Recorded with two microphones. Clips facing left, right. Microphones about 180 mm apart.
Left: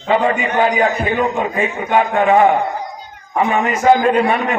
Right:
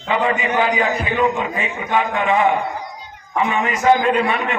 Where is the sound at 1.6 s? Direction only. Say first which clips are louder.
Left 5 dB; 45° left (ahead or behind).